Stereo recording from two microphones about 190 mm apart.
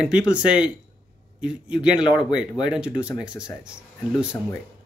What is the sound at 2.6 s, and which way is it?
Speech, 5° right (ahead or behind).